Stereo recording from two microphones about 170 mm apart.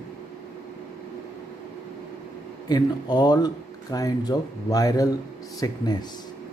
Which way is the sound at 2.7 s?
25° left (ahead or behind).